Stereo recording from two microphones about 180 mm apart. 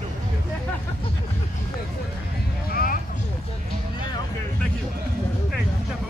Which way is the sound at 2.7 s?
55° left (ahead or behind).